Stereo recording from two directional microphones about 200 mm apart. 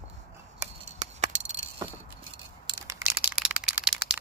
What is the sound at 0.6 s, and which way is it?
Chop, 35° right (ahead or behind).